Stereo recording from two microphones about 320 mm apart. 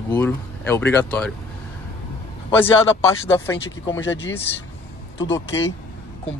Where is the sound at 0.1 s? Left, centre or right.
Centre.